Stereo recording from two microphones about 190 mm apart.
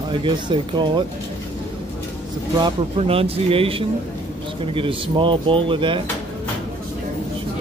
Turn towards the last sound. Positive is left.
turn(degrees=-25)  # may be behind; listen again after turning